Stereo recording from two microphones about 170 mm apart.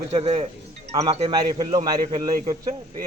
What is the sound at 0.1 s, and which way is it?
Speech, 35° right (ahead or behind).